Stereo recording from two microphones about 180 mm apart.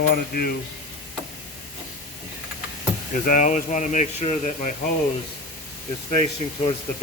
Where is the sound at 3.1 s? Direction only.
45° left (ahead or behind).